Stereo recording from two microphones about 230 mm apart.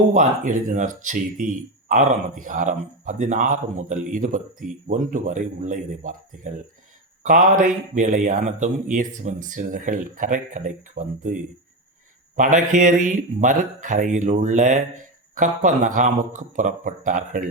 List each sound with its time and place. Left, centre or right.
0.1 s speech: right